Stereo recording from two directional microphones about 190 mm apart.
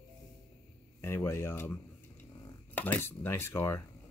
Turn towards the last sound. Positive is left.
turn(degrees=10)  # may be behind; listen again after turning